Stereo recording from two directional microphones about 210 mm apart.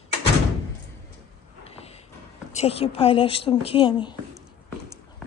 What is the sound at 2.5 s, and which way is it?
A woman's voice, 30° left (ahead or behind).